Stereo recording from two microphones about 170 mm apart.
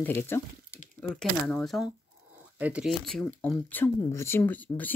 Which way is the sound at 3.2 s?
10° left (ahead or behind).